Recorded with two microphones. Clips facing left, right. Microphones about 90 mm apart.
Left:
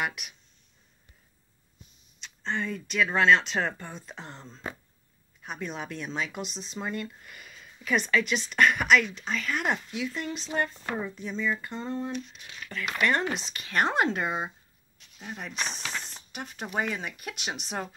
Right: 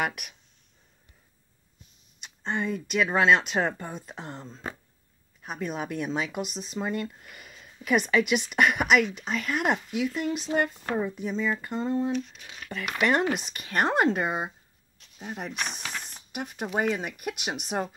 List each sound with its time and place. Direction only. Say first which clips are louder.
0.0 s speech: right 2 dB; 50° right (ahead or behind)
2.1 s speech: right 2 dB; 10° right (ahead or behind)